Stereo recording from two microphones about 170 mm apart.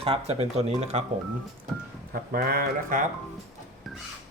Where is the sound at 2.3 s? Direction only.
60° right (ahead or behind).